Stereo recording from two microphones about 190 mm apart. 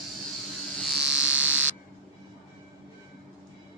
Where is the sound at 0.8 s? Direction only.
Centre (ahead or behind).